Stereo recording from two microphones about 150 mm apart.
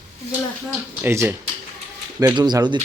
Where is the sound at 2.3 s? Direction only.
25° right (ahead or behind).